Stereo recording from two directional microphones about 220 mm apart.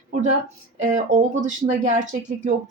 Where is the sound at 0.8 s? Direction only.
35° right (ahead or behind).